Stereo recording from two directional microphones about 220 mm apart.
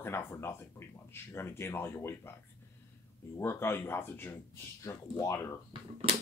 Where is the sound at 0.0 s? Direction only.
10° left (ahead or behind).